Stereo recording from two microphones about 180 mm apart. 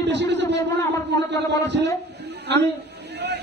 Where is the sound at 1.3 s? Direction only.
75° right (ahead or behind).